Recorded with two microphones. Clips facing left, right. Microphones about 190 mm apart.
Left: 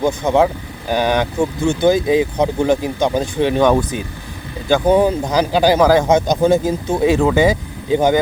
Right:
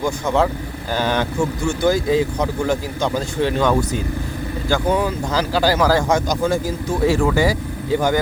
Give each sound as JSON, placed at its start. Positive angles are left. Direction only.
{"t": 0.0, "sound": "speech", "side_deg": 15}